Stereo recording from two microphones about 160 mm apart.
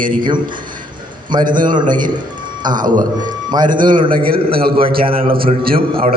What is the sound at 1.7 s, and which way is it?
Speech, 30° right (ahead or behind).